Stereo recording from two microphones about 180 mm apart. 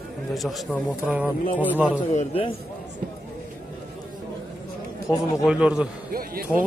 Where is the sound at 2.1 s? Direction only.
35° left (ahead or behind).